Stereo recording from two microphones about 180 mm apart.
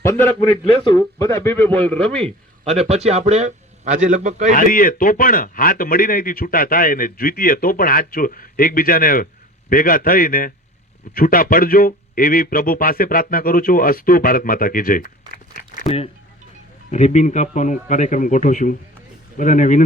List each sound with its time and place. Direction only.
0.0 s speech: 15° left (ahead or behind)
2.6 s a man's voice: 35° right (ahead or behind)
4.5 s a man's voice: 50° left (ahead or behind)
15.3 s a sound: 55° left (ahead or behind)
16.9 s a man's voice: 40° left (ahead or behind)